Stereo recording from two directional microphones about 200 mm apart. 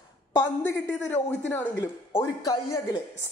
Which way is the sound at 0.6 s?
10° left (ahead or behind).